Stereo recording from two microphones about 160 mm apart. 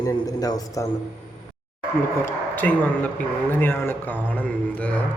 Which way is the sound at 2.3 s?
10° left (ahead or behind).